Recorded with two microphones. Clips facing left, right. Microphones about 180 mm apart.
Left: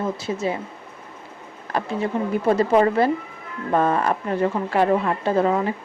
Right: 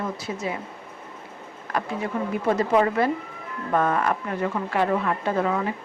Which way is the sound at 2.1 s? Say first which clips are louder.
Left 4 dB; 30° left (ahead or behind).